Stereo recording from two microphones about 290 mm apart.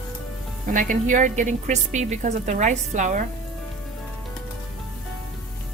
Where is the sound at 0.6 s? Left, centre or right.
Right.